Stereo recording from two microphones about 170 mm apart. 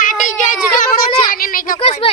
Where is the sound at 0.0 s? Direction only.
50° left (ahead or behind).